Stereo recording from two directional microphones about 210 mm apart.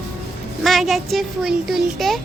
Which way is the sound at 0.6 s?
Centre (ahead or behind).